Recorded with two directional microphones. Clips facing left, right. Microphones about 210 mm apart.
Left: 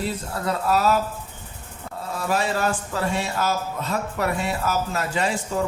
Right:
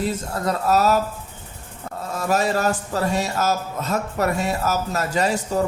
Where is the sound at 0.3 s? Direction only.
40° right (ahead or behind).